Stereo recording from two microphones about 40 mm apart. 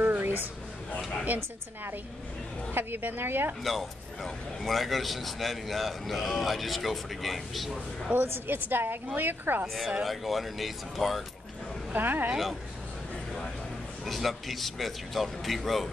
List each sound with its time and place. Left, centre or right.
0.0 s a sound: right
2.7 s a woman's voice: right
3.6 s a man's voice: centre
8.1 s a woman's voice: right
10.0 s a man's voice: centre
11.9 s a woman's voice: right
14.0 s a man's voice: centre